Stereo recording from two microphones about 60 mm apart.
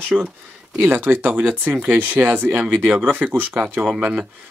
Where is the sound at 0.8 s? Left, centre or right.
Right.